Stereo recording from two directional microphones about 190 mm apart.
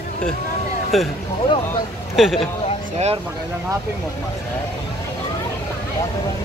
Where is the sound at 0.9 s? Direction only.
Centre (ahead or behind).